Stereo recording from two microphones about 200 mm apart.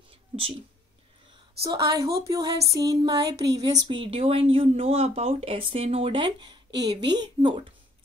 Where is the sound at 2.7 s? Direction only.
15° right (ahead or behind).